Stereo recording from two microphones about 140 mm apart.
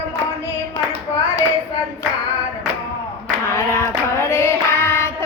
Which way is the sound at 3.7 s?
15° left (ahead or behind).